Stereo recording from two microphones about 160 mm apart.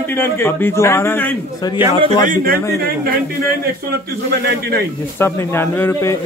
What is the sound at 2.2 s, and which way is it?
Speech, 65° right (ahead or behind).